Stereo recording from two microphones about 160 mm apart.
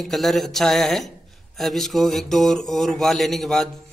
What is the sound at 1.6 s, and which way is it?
Speech, centre (ahead or behind).